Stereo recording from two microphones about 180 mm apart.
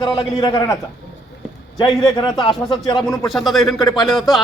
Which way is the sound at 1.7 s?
20° left (ahead or behind).